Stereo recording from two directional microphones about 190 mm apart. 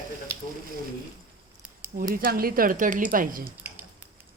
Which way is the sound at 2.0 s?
45° right (ahead or behind).